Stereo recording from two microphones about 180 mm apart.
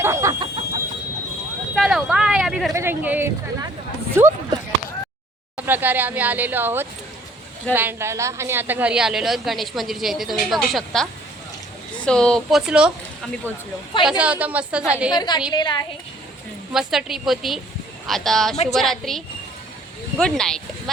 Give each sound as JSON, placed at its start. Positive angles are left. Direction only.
{"t": 0.0, "sound": "chicken", "side_deg": -15}
{"t": 1.7, "sound": "a sound", "side_deg": 0}
{"t": 2.7, "sound": "speech", "side_deg": -10}
{"t": 5.5, "sound": "a woman's voice", "side_deg": -10}
{"t": 14.0, "sound": "speech", "side_deg": -5}
{"t": 15.1, "sound": "a woman's voice", "side_deg": 25}
{"t": 16.7, "sound": "a woman's voice", "side_deg": 0}